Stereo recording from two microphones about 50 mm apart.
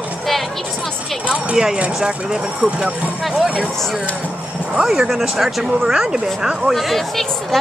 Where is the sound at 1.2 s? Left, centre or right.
Centre.